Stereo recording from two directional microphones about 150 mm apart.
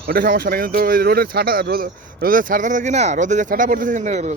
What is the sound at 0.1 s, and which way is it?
Speech, 90° right.